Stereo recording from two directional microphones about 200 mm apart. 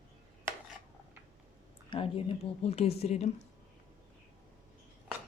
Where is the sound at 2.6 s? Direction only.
30° left (ahead or behind).